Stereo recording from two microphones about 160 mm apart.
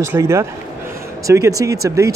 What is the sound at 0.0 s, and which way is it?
A man's voice, 15° right (ahead or behind).